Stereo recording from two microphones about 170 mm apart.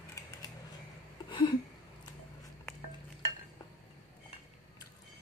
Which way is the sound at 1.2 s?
30° left (ahead or behind).